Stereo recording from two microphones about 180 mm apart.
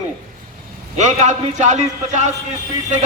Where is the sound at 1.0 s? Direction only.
40° right (ahead or behind).